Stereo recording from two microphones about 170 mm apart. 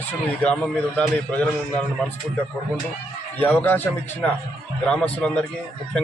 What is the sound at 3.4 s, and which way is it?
A man's voice, 10° left (ahead or behind).